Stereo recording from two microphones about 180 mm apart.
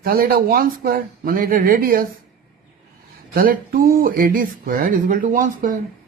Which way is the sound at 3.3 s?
55° right (ahead or behind).